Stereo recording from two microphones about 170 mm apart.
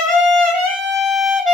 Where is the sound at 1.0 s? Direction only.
Centre (ahead or behind).